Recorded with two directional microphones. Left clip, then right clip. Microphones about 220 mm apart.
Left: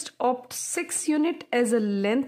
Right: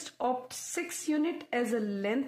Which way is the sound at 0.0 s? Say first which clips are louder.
Left 6 dB; 40° left (ahead or behind).